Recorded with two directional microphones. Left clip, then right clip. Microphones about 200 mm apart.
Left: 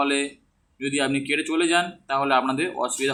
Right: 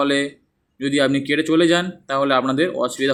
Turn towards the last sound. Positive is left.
turn(degrees=-25)  # may be behind; listen again after turning